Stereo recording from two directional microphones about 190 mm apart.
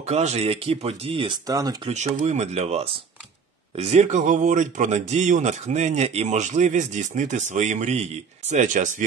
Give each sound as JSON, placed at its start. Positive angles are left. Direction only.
{"t": 0.0, "sound": "speech", "side_deg": -35}
{"t": 1.9, "sound": "speech", "side_deg": -35}